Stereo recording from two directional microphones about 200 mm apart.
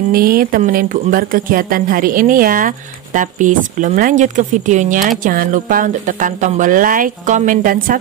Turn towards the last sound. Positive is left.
turn(degrees=-45)  # may be behind; listen again after turning